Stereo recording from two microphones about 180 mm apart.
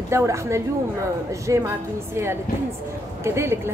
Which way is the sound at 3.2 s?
15° right (ahead or behind).